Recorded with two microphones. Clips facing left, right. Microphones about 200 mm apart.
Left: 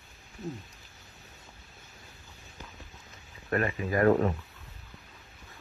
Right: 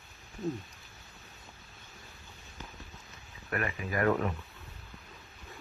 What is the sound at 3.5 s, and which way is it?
Speech, 35° left (ahead or behind).